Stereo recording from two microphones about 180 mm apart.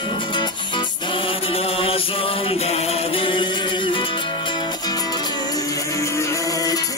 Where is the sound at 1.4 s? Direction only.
30° left (ahead or behind).